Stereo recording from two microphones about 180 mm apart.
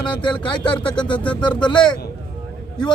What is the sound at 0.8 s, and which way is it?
Speech, 5° left (ahead or behind).